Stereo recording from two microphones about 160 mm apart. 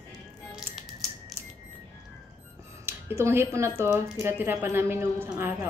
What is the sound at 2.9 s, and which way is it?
Speech, 15° right (ahead or behind).